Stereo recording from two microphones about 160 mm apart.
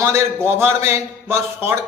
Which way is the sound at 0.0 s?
15° right (ahead or behind).